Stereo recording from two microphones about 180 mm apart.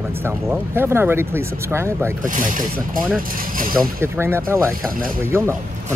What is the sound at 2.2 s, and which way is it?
Speech, 50° right (ahead or behind).